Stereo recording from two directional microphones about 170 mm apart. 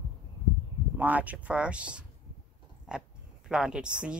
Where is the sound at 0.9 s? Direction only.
10° right (ahead or behind).